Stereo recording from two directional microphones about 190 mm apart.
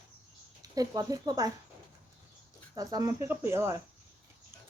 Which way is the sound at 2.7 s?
20° right (ahead or behind).